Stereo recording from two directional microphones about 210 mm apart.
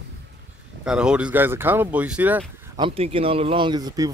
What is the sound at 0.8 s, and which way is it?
Speech, 5° right (ahead or behind).